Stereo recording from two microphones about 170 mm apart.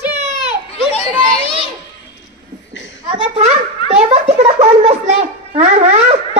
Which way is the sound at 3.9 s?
35° right (ahead or behind).